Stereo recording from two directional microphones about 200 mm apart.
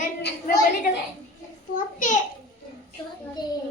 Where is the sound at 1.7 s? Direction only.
40° left (ahead or behind).